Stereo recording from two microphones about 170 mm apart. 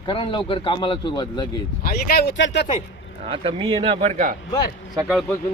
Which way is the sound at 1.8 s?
60° left (ahead or behind).